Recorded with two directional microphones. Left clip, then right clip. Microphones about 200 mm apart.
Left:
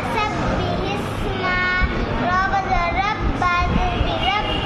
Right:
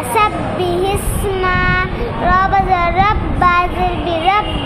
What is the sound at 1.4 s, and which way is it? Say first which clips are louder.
Child singing: right 4 dB; 55° right (ahead or behind).